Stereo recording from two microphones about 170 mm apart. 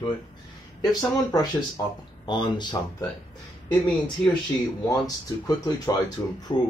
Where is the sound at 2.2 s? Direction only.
25° left (ahead or behind).